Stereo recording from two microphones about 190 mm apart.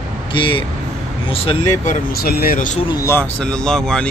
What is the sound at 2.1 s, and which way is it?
Speech, 55° left (ahead or behind).